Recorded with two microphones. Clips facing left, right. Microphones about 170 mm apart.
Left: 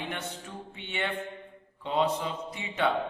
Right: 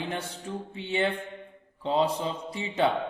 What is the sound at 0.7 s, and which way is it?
A man's voice, 30° right (ahead or behind).